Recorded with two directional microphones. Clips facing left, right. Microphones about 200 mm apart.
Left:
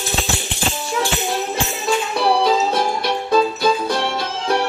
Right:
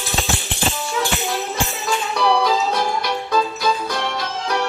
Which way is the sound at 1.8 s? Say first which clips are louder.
Left 2 dB; 30° left (ahead or behind).